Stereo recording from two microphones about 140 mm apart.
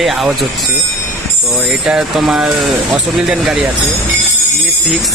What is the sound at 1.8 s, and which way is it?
Speech, 5° right (ahead or behind).